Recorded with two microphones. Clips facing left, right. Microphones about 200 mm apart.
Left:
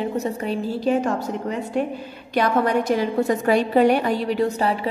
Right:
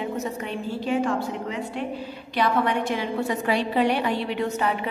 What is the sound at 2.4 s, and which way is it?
A woman's voice, 40° left (ahead or behind).